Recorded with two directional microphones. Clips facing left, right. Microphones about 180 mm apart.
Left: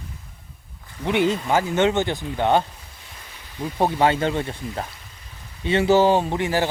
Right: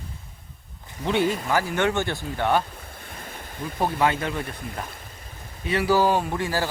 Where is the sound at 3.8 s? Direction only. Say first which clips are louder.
Left 4 dB; 25° left (ahead or behind).